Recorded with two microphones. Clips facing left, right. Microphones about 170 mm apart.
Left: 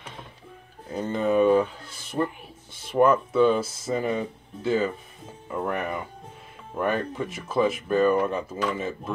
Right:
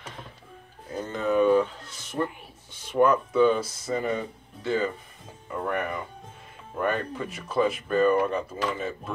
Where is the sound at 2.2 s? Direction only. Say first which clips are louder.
Left 2 dB; 15° left (ahead or behind).